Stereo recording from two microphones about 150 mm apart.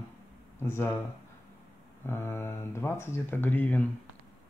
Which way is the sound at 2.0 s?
15° left (ahead or behind).